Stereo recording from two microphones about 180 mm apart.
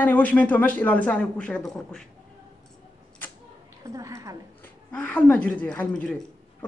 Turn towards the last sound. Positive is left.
turn(degrees=5)  # may be behind; listen again after turning